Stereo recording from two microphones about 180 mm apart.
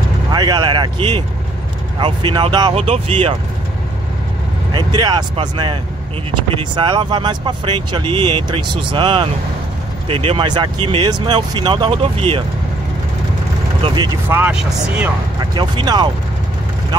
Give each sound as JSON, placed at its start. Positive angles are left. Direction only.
{"t": 0.3, "sound": "speech", "side_deg": -20}
{"t": 4.7, "sound": "speech", "side_deg": -25}
{"t": 13.8, "sound": "speech", "side_deg": -25}
{"t": 14.3, "sound": "speech", "side_deg": -5}
{"t": 15.5, "sound": "speech", "side_deg": -25}